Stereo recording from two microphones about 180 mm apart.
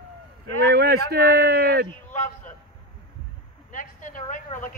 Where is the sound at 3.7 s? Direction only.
45° left (ahead or behind).